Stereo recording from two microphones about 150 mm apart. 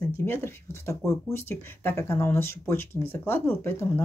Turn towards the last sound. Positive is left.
turn(degrees=15)  # may be behind; listen again after turning